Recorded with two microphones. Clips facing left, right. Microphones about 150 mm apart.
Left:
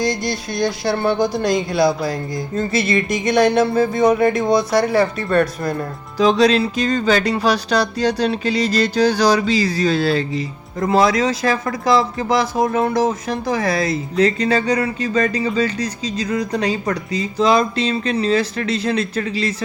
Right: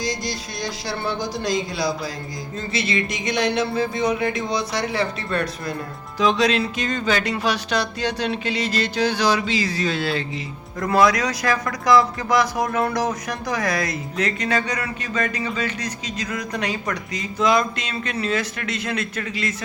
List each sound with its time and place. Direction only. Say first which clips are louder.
0.0 s speech: left 6 dB; 60° left (ahead or behind)
6.1 s speech: left 5 dB; 35° left (ahead or behind)
10.8 s speech: left 3 dB; 25° left (ahead or behind)